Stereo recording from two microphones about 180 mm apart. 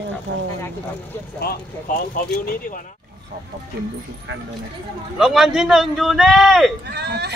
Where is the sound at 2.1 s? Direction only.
50° left (ahead or behind).